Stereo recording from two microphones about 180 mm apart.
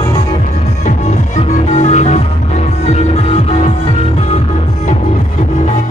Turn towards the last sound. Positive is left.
turn(degrees=35)  # may be behind; listen again after turning